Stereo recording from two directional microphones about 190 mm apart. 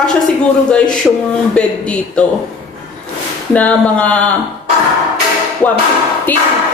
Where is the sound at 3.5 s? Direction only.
5° left (ahead or behind).